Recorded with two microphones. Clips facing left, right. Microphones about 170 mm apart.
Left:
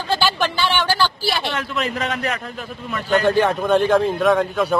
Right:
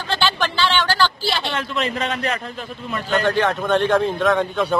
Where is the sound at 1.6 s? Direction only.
5° left (ahead or behind).